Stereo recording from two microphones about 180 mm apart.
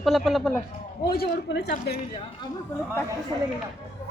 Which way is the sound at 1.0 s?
60° left (ahead or behind).